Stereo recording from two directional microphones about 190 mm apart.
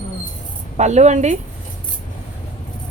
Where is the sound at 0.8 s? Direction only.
40° right (ahead or behind).